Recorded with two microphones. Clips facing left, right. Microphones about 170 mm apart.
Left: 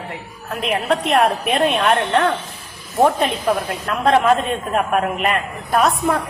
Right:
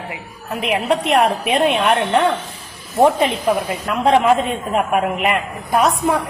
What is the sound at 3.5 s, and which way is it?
A woman's voice, 5° right (ahead or behind).